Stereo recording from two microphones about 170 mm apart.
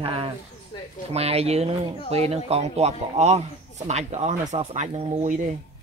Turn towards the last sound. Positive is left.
turn(degrees=-45)  # may be behind; listen again after turning